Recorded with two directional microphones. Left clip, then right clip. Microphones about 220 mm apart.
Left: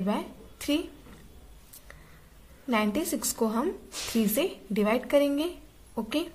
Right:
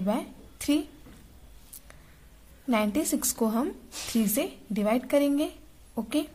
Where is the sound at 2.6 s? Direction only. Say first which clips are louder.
Right 1 dB; 20° right (ahead or behind).